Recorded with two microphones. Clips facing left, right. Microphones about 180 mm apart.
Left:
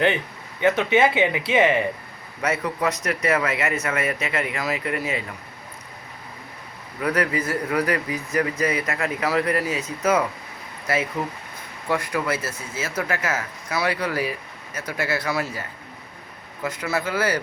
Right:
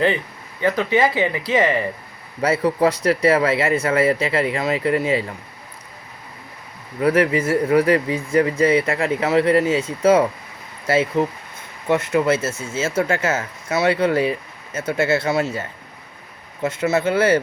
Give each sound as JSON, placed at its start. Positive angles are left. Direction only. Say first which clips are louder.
{"t": 0.9, "sound": "speech", "louder": "even", "side_deg": 5}
{"t": 2.4, "sound": "speech", "louder": "right 7 dB", "side_deg": -30}
{"t": 7.0, "sound": "speech", "louder": "right 6 dB", "side_deg": -25}
{"t": 16.6, "sound": "speech", "louder": "right 7 dB", "side_deg": -25}